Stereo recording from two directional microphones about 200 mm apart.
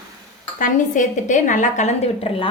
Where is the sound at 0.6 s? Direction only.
40° left (ahead or behind).